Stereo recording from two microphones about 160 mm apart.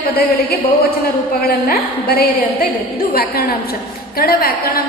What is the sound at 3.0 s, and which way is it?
A woman's voice, 75° left (ahead or behind).